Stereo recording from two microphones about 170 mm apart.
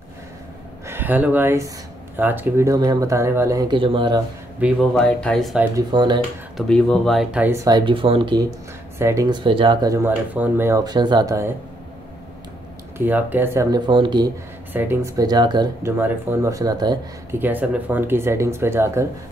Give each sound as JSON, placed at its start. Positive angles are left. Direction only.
{"t": 0.8, "sound": "speech", "side_deg": -10}
{"t": 4.6, "sound": "speech", "side_deg": -10}
{"t": 4.9, "sound": "speech", "side_deg": 5}
{"t": 5.8, "sound": "speech", "side_deg": -25}
{"t": 6.5, "sound": "speech", "side_deg": 5}
{"t": 7.5, "sound": "speech", "side_deg": -25}
{"t": 12.9, "sound": "speech", "side_deg": -10}
{"t": 14.7, "sound": "speech", "side_deg": -10}
{"t": 17.3, "sound": "speech", "side_deg": -10}